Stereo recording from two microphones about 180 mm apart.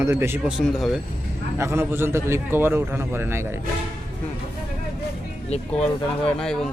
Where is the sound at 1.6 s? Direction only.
15° right (ahead or behind).